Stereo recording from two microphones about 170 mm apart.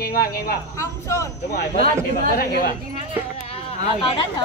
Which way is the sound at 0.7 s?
15° left (ahead or behind).